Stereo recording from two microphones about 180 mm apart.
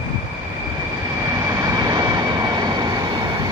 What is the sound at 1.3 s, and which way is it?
Vehicle, 20° right (ahead or behind).